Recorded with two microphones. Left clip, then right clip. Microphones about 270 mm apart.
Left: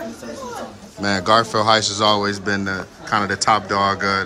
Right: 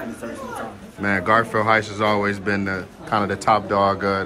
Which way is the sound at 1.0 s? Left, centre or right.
Centre.